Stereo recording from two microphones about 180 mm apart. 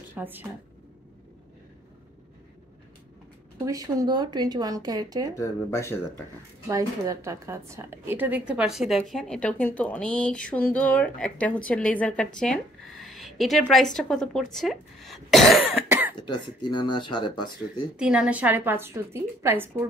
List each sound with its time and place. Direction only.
0.1 s speech: 10° right (ahead or behind)
3.6 s speech: 20° right (ahead or behind)
5.4 s speech: 15° left (ahead or behind)
6.7 s a woman's voice: 15° right (ahead or behind); by 15.8 s centre (ahead or behind)
15.9 s cough: 10° right (ahead or behind)
16.3 s speech: 25° left (ahead or behind)
17.9 s a woman's voice: 5° right (ahead or behind)